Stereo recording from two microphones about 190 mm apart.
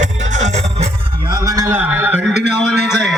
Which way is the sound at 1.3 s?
15° right (ahead or behind).